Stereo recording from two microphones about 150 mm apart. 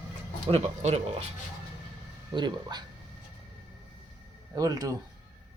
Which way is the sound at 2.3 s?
30° right (ahead or behind).